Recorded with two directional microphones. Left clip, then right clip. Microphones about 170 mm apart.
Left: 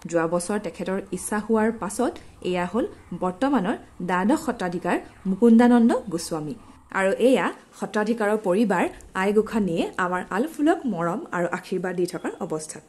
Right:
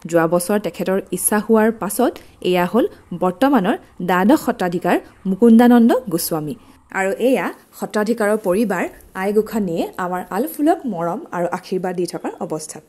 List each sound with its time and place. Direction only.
0.1 s speech: 45° right (ahead or behind)
6.9 s a woman's voice: 5° right (ahead or behind)
7.8 s a woman's voice: 40° right (ahead or behind)
8.5 s a woman's voice: 15° right (ahead or behind)